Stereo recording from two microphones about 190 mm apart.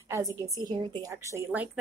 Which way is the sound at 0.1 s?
15° right (ahead or behind).